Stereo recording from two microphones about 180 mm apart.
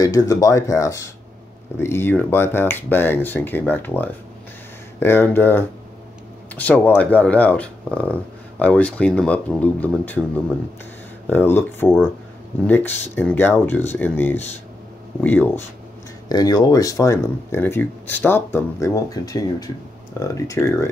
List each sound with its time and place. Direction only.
0.0 s speech: 20° left (ahead or behind)
5.0 s speech: 10° left (ahead or behind)
11.2 s speech: 10° left (ahead or behind)
16.3 s speech: 20° left (ahead or behind)